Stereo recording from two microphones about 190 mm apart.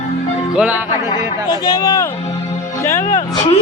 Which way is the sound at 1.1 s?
20° left (ahead or behind).